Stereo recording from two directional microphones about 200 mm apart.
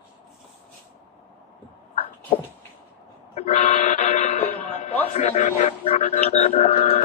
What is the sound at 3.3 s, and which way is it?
Vehicle, 30° left (ahead or behind).